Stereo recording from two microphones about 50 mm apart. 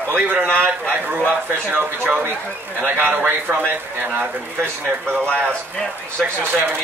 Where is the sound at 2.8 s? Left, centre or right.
Right.